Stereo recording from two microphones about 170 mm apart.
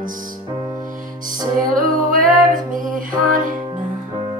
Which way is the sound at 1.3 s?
55° right (ahead or behind).